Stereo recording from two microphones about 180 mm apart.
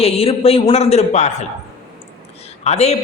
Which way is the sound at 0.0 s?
35° left (ahead or behind).